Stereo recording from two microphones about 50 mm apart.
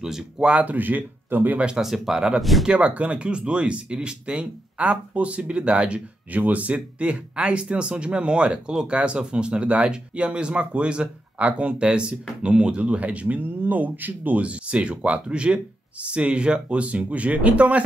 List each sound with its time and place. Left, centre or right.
0.0 s speech: centre
0.5 s speech: right
1.8 s speech: centre; by 14.4 s right
14.4 s speech: right